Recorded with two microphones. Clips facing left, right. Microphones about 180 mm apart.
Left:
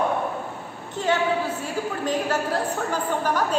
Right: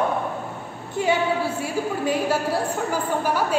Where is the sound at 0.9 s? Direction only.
10° right (ahead or behind).